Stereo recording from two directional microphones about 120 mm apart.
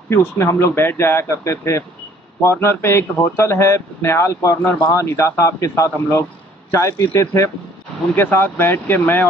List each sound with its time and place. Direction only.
0.1 s speech: 25° left (ahead or behind)